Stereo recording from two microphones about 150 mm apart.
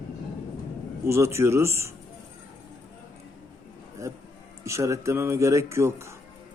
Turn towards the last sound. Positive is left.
turn(degrees=-20)  # may be behind; listen again after turning